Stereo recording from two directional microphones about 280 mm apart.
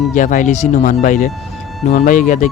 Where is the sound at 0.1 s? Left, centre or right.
Left.